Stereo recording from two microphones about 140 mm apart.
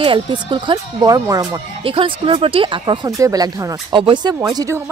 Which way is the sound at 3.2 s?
25° right (ahead or behind).